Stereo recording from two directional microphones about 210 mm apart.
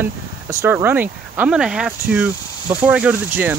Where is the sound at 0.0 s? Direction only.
10° right (ahead or behind).